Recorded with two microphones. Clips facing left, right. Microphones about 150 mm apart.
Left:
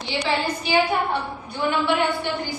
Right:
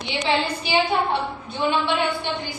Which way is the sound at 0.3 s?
20° right (ahead or behind).